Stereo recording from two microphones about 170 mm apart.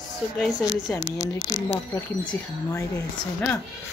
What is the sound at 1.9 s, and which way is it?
Speech, 15° left (ahead or behind).